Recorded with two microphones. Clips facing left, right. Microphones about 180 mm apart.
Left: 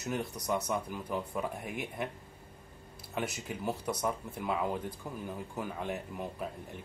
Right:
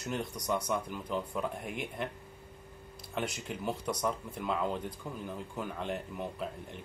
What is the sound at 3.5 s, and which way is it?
Speech, 10° left (ahead or behind).